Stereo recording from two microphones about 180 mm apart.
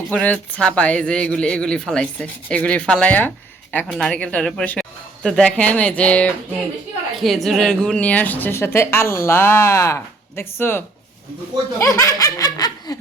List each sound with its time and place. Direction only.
0.1 s a woman's voice: 5° left (ahead or behind)